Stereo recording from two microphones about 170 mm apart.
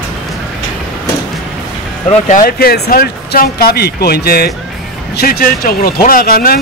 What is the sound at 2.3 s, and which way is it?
A man's voice, 60° left (ahead or behind).